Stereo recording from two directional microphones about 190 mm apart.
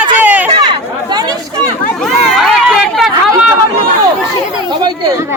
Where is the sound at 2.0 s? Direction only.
Centre (ahead or behind).